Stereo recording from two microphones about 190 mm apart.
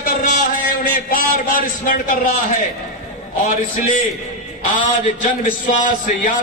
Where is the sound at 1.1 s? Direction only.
45° left (ahead or behind).